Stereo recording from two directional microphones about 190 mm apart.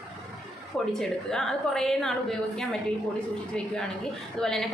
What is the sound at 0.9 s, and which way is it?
A woman's voice, centre (ahead or behind).